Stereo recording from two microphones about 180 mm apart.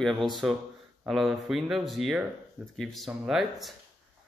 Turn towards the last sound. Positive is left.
turn(degrees=0)  # may be behind; listen again after turning